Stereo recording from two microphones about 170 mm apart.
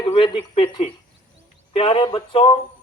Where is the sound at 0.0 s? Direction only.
30° left (ahead or behind).